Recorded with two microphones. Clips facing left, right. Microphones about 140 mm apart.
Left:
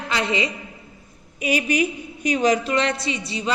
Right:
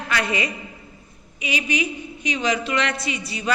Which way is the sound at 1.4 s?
45° left (ahead or behind).